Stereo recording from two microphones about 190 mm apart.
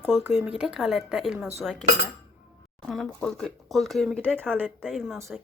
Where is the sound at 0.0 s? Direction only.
10° right (ahead or behind).